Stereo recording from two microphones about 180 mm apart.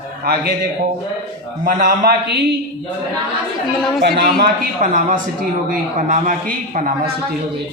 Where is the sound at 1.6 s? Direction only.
55° right (ahead or behind).